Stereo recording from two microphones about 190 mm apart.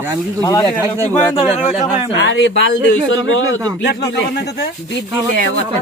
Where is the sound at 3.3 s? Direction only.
90° left.